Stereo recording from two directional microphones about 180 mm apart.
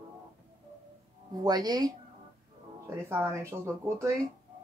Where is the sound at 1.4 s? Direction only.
20° right (ahead or behind).